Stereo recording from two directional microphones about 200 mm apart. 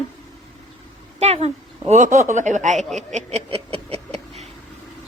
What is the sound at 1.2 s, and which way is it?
Speech, 30° right (ahead or behind).